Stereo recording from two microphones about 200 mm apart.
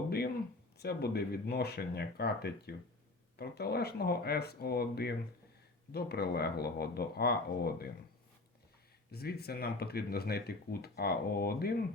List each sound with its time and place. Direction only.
0.8 s speech: 50° left (ahead or behind)
9.1 s speech: 50° left (ahead or behind)